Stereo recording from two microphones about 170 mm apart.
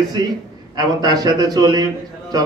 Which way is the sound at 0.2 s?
25° right (ahead or behind).